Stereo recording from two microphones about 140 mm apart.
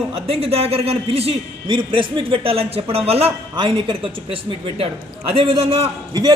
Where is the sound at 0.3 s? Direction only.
45° right (ahead or behind).